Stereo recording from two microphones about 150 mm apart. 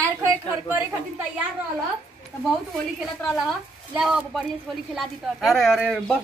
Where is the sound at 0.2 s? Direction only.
15° right (ahead or behind).